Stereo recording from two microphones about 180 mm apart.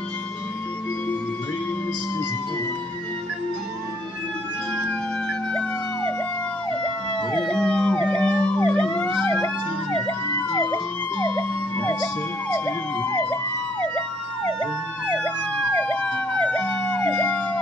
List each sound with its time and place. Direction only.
5.5 s emergency vehicle: 5° left (ahead or behind)
7.2 s emergency vehicle: 25° left (ahead or behind)
7.4 s emergency vehicle: 5° left (ahead or behind)
15.1 s emergency vehicle: 5° left (ahead or behind)